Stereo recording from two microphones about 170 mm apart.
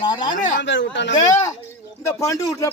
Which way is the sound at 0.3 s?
50° left (ahead or behind).